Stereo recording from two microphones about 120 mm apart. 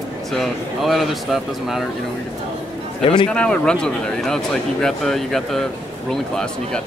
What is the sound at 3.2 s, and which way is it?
A man's voice, 10° left (ahead or behind).